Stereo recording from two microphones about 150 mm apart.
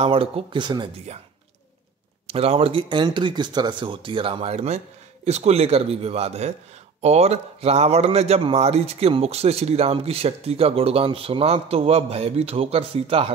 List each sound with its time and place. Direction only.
0.0 s speech: 35° right (ahead or behind)
2.2 s a man's voice: 40° right (ahead or behind)